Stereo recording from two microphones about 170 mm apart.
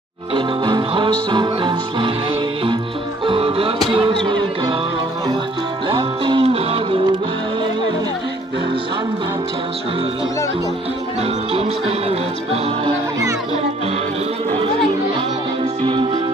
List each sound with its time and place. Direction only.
0.3 s music: 25° right (ahead or behind)
3.3 s music: 35° right (ahead or behind)
5.9 s music: 30° right (ahead or behind)
11.5 s music: 35° right (ahead or behind)
15.8 s music: 30° right (ahead or behind)